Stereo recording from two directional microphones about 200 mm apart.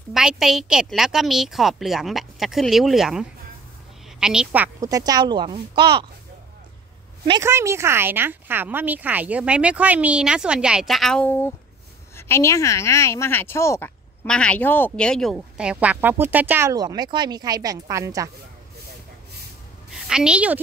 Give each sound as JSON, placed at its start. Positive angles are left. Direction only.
{"t": 0.1, "sound": "a woman's voice", "side_deg": -5}
{"t": 7.2, "sound": "speech", "side_deg": -15}
{"t": 19.9, "sound": "a woman's voice", "side_deg": -5}